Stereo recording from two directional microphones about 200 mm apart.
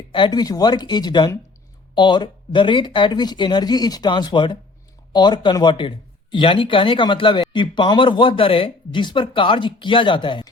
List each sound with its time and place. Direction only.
0.1 s speech: 25° left (ahead or behind)